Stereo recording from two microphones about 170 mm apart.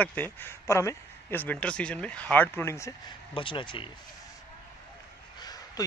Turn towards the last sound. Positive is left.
turn(degrees=25)  # may be behind; listen again after turning